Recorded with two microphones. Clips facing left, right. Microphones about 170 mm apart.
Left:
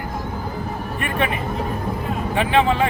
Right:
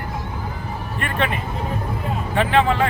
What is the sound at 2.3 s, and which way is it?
Speech, 15° left (ahead or behind).